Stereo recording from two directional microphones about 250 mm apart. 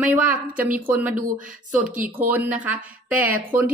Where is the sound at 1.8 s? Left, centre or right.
Right.